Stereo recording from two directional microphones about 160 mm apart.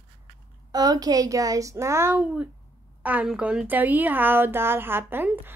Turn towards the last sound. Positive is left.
turn(degrees=-15)  # may be behind; listen again after turning